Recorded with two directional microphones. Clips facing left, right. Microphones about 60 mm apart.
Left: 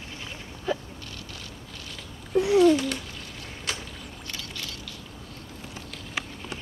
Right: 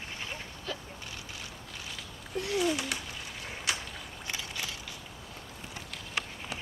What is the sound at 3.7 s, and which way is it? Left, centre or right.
Boat, centre.